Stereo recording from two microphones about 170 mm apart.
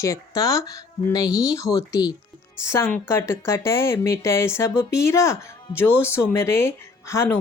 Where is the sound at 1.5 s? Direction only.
20° left (ahead or behind).